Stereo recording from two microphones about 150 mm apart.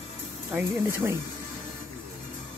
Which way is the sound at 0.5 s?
15° right (ahead or behind).